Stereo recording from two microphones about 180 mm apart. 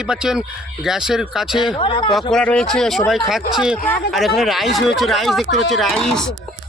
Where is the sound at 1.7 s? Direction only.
30° left (ahead or behind).